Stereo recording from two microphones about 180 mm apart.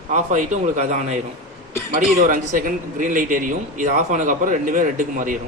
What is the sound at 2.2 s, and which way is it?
A man's voice, 50° right (ahead or behind).